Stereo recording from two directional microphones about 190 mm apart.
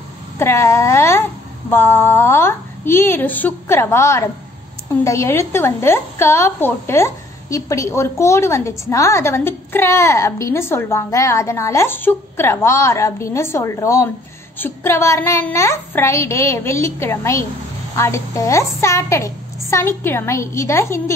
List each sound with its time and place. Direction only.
0.4 s a woman's voice: 15° left (ahead or behind)